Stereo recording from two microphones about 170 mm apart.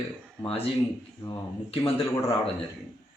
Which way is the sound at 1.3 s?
35° left (ahead or behind).